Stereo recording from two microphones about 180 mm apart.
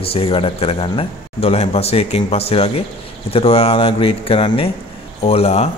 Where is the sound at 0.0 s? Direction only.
30° left (ahead or behind).